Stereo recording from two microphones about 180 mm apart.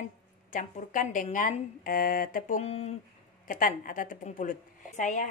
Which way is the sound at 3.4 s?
45° left (ahead or behind).